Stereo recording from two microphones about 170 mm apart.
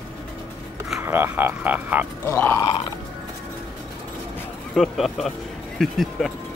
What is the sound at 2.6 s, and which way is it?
Music, 30° left (ahead or behind).